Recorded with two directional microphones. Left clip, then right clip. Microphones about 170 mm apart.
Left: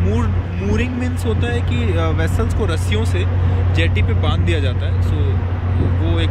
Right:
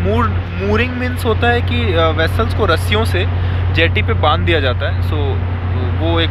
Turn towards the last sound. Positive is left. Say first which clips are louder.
# right 7 dB
turn(degrees=15)  # may be behind; listen again after turning